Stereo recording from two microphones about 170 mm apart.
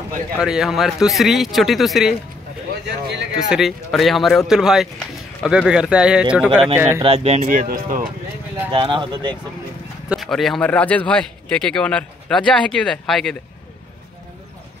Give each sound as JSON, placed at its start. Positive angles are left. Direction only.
{"t": 0.4, "sound": "speech", "side_deg": -5}
{"t": 2.7, "sound": "speech", "side_deg": -80}
{"t": 3.3, "sound": "speech", "side_deg": 0}
{"t": 7.0, "sound": "speech", "side_deg": -35}
{"t": 7.4, "sound": "speech", "side_deg": -55}
{"t": 8.7, "sound": "speech", "side_deg": -30}
{"t": 10.0, "sound": "speech", "side_deg": 0}